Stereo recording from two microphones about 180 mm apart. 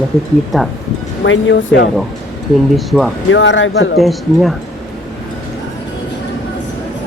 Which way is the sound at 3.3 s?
90° left.